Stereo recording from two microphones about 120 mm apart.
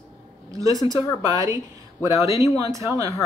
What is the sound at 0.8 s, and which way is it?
Speech, 35° left (ahead or behind).